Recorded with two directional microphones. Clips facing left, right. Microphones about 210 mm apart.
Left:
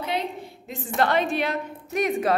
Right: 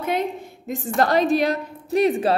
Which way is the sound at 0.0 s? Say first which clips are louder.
Right 4 dB; 50° right (ahead or behind).